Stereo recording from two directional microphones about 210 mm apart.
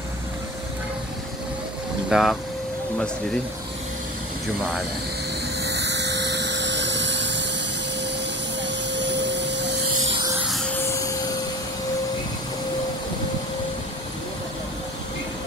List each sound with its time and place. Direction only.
2.0 s speech: centre (ahead or behind)
5.8 s a sound: 55° right (ahead or behind)
8.5 s vacuum cleaner: 55° right (ahead or behind)
10.5 s music: 5° left (ahead or behind)
10.9 s vacuum cleaner: 15° left (ahead or behind)